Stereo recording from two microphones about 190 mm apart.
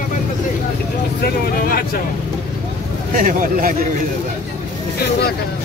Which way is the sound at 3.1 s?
45° right (ahead or behind).